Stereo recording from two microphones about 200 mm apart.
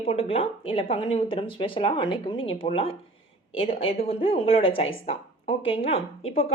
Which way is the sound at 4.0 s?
30° left (ahead or behind).